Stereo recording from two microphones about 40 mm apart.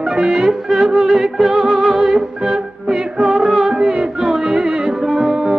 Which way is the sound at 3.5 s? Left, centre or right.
Centre.